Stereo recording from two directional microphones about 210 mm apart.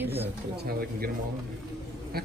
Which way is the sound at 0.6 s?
45° right (ahead or behind).